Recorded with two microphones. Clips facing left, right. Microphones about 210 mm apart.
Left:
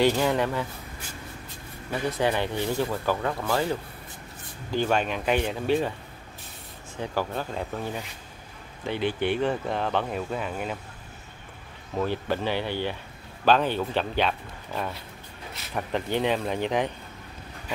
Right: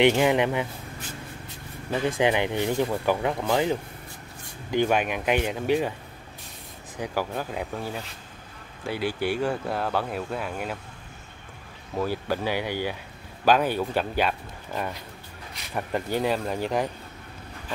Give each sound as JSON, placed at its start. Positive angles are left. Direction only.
{"t": 0.0, "sound": "speech", "side_deg": -20}
{"t": 2.1, "sound": "speech", "side_deg": -15}
{"t": 7.0, "sound": "speech", "side_deg": -10}
{"t": 8.8, "sound": "speech", "side_deg": -10}
{"t": 11.9, "sound": "speech", "side_deg": -5}